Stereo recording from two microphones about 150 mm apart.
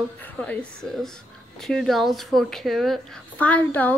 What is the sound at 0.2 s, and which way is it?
Speech, 10° left (ahead or behind).